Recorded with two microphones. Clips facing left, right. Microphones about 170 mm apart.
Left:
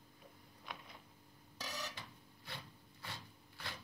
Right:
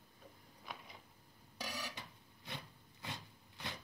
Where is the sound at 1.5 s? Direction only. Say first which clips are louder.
Right 1 dB; 10° right (ahead or behind).